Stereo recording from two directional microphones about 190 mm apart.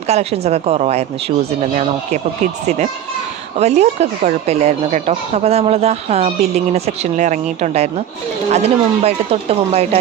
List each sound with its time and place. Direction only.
0.1 s speech: 35° right (ahead or behind)